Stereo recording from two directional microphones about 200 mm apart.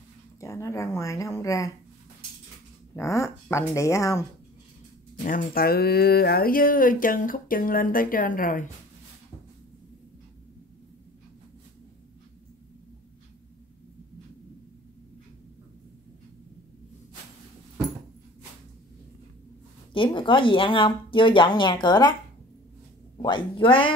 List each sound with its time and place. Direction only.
0.4 s speech: 15° left (ahead or behind)
3.0 s speech: 15° left (ahead or behind)
5.2 s speech: 45° left (ahead or behind)
19.9 s speech: 25° left (ahead or behind)
23.1 s speech: 25° left (ahead or behind)